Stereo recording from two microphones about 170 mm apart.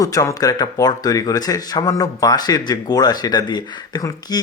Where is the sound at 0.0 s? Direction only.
20° left (ahead or behind).